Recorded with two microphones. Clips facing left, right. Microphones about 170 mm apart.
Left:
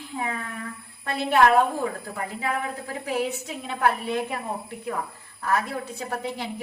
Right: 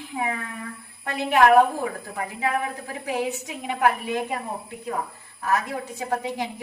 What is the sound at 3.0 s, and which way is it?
A woman's voice, 20° right (ahead or behind).